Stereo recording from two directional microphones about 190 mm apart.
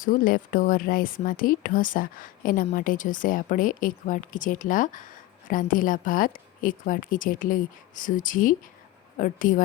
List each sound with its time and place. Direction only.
0.0 s speech: 45° left (ahead or behind)